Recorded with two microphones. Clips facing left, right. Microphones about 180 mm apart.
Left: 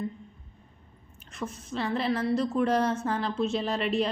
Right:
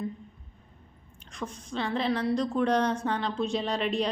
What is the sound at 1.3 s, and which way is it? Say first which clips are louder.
A woman's voice: left 1 dB; 5° left (ahead or behind).